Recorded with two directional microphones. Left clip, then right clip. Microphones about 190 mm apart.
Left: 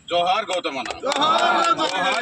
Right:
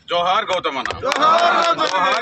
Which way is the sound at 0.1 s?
15° right (ahead or behind).